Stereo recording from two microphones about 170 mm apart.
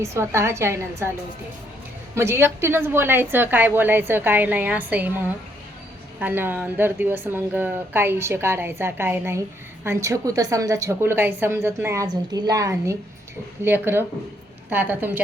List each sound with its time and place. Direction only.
0.0 s speech: 15° right (ahead or behind)
2.1 s speech: 15° right (ahead or behind)